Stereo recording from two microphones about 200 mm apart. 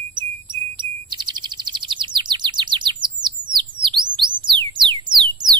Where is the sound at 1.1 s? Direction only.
20° right (ahead or behind).